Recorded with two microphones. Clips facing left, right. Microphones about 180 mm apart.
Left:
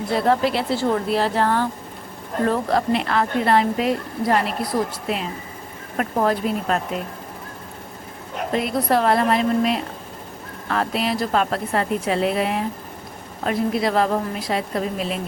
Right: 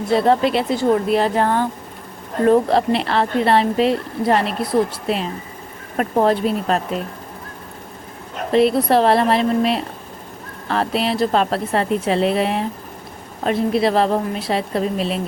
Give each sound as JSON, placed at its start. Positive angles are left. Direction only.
{"t": 0.1, "sound": "a woman's voice", "side_deg": -25}
{"t": 8.5, "sound": "a woman's voice", "side_deg": -25}